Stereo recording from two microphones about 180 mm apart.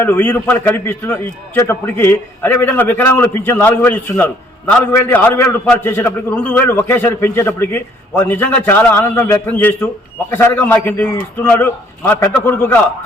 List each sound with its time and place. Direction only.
0.0 s a man's voice: 10° left (ahead or behind)